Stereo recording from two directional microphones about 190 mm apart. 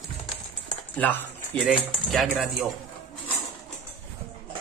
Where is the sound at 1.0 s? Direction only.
10° left (ahead or behind).